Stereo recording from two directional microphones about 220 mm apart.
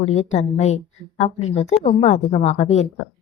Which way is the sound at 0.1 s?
30° left (ahead or behind).